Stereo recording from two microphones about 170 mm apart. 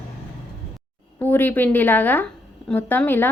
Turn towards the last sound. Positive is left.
turn(degrees=10)  # may be behind; listen again after turning